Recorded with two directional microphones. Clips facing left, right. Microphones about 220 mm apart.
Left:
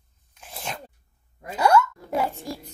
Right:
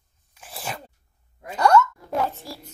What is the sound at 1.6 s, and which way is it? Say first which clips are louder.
Speech: right 1 dB; 5° left (ahead or behind).